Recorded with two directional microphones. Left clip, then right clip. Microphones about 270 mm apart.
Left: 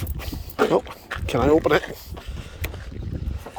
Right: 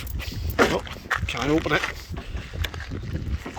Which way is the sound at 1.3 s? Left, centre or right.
Left.